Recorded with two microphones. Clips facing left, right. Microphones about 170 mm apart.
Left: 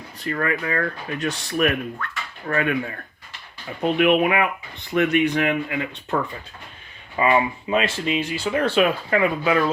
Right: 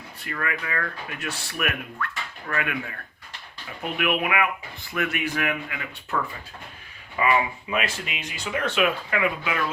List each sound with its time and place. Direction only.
0.3 s speech: 35° left (ahead or behind)
7.2 s speech: 30° left (ahead or behind)